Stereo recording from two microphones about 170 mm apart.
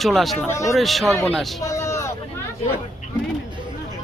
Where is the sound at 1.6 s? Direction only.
20° left (ahead or behind).